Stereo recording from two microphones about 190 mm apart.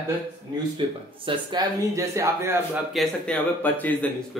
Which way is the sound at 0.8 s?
25° right (ahead or behind).